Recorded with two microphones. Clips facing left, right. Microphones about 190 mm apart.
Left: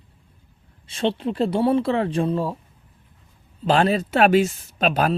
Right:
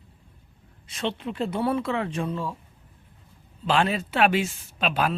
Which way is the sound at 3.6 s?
40° left (ahead or behind).